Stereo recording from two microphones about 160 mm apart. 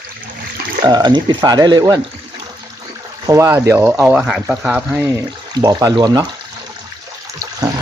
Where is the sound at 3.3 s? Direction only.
15° right (ahead or behind).